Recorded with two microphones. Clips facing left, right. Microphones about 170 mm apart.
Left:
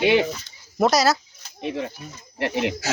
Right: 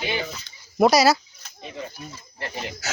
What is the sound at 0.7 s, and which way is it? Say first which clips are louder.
Speech: right 2 dB; centre (ahead or behind).